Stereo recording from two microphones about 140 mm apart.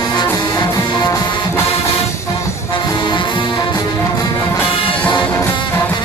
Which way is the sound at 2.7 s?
35° left (ahead or behind).